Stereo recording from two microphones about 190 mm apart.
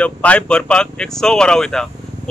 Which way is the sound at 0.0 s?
5° left (ahead or behind).